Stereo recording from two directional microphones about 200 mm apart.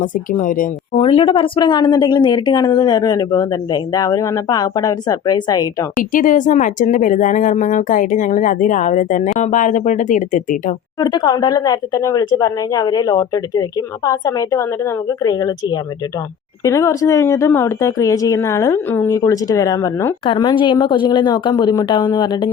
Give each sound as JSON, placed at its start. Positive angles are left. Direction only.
{"t": 0.0, "sound": "speech", "side_deg": 40}
{"t": 0.9, "sound": "speech", "side_deg": 25}
{"t": 6.0, "sound": "speech", "side_deg": 40}
{"t": 11.0, "sound": "speech", "side_deg": 20}